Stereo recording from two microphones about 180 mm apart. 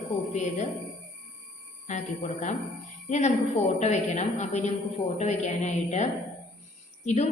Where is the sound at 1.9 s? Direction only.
40° left (ahead or behind).